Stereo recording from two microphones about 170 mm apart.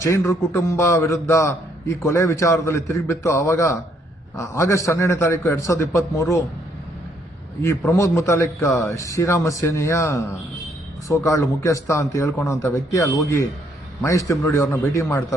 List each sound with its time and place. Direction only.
0.0 s a man's voice: 15° left (ahead or behind)
7.6 s a man's voice: 15° left (ahead or behind)